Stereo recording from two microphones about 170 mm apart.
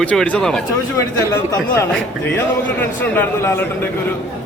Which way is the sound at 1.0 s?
15° left (ahead or behind).